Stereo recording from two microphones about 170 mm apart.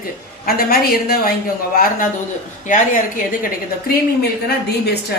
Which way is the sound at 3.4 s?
65° left (ahead or behind).